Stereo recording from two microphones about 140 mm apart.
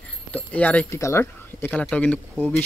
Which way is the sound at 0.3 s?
10° left (ahead or behind).